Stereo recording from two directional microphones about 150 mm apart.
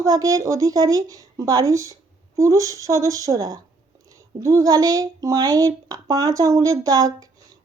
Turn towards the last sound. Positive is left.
turn(degrees=-25)  # may be behind; listen again after turning